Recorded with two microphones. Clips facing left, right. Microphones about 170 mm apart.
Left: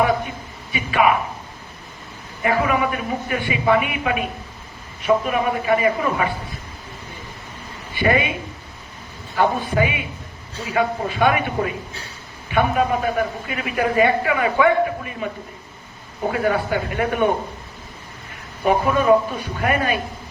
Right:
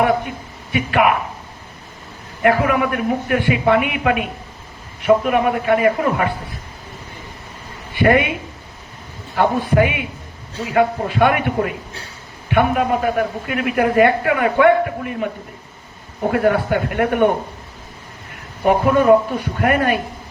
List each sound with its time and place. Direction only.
0.7 s a man's voice: 65° right (ahead or behind)
2.4 s a woman's voice: 65° right (ahead or behind)
8.0 s a woman's voice: 65° right (ahead or behind)
9.3 s a woman's voice: 60° right (ahead or behind)
16.3 s a woman's voice: 65° right (ahead or behind)
18.6 s a woman's voice: 55° right (ahead or behind)